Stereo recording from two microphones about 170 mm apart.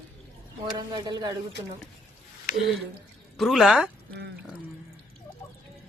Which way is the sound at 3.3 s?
Centre (ahead or behind).